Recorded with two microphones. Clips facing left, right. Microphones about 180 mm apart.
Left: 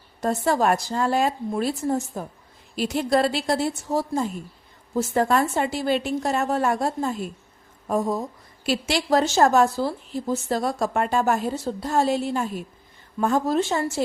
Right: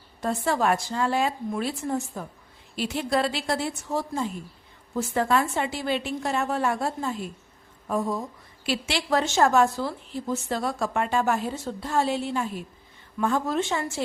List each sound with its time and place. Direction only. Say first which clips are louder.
0.2 s speech: left 3 dB; 40° left (ahead or behind)